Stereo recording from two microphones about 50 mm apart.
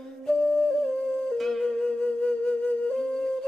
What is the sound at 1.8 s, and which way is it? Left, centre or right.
Flute, left.